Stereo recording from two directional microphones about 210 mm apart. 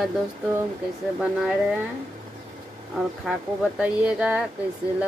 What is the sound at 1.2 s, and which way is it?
Speech, 5° right (ahead or behind).